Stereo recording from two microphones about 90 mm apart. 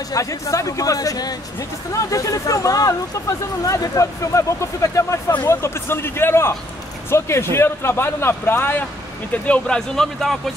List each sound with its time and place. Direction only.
0.1 s speech: 40° left (ahead or behind)
9.3 s speech: 10° left (ahead or behind)